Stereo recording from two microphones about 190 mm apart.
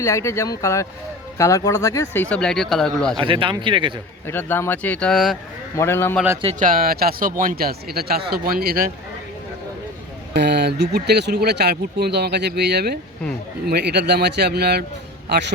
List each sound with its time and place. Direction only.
0.0 s speech: 15° left (ahead or behind)
2.3 s a man's voice: 5° left (ahead or behind)
3.2 s speech: 25° right (ahead or behind)
4.3 s speech: 10° left (ahead or behind)
5.7 s speech: 15° left (ahead or behind)
6.4 s speech: 40° right (ahead or behind)
10.3 s speech: 60° right (ahead or behind)